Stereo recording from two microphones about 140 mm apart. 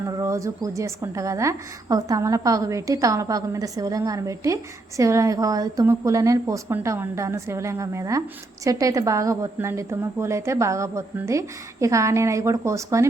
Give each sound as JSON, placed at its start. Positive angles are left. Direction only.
{"t": 0.1, "sound": "a woman's voice", "side_deg": -20}